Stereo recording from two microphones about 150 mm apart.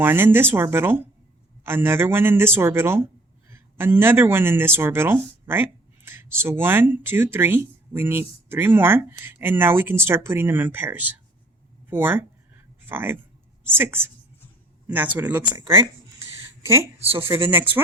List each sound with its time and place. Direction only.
0.0 s speech: 15° right (ahead or behind)
16.6 s speech: 20° right (ahead or behind)